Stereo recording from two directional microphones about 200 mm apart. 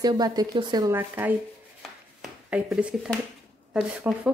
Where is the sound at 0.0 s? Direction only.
20° right (ahead or behind).